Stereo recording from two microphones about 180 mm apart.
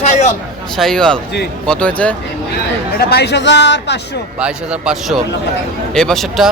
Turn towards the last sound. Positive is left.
turn(degrees=0)  # may be behind; listen again after turning